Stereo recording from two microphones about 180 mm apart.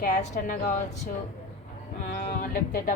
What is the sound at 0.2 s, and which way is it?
Speech, 50° left (ahead or behind).